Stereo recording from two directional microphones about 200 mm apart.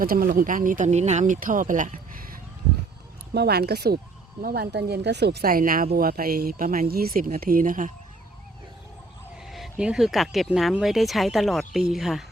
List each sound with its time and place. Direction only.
0.0 s speech: 45° right (ahead or behind)
9.5 s speech: 5° right (ahead or behind)